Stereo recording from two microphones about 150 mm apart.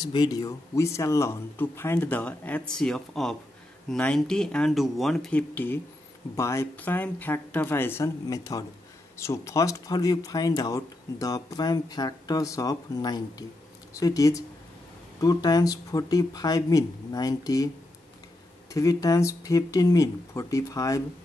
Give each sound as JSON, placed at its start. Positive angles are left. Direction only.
{"t": 0.0, "sound": "speech", "side_deg": 30}
{"t": 5.5, "sound": "speech", "side_deg": 15}
{"t": 18.7, "sound": "speech", "side_deg": 20}